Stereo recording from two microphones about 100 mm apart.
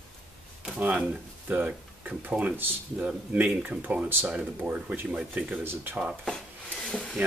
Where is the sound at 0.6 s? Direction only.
15° right (ahead or behind).